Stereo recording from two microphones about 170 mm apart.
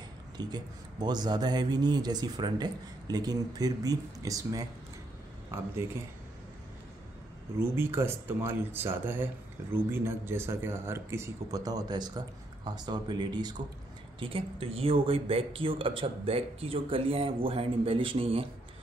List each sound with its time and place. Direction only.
0.4 s speech: 25° right (ahead or behind)
7.5 s speech: 15° right (ahead or behind); by 18.5 s 35° right (ahead or behind)